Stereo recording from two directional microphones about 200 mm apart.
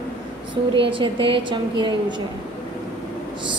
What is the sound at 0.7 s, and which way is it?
A woman's voice, 25° right (ahead or behind).